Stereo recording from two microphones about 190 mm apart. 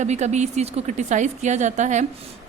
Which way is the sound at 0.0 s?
35° right (ahead or behind).